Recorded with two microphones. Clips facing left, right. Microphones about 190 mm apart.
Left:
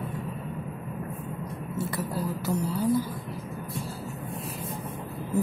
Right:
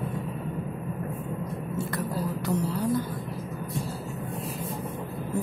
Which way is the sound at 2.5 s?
Centre (ahead or behind).